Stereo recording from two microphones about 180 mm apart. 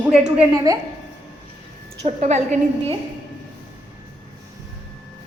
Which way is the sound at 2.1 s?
40° right (ahead or behind).